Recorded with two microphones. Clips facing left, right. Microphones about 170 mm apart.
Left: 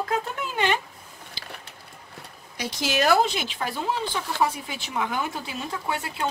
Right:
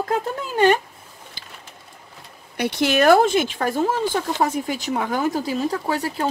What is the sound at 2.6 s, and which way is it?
Speech, 60° right (ahead or behind).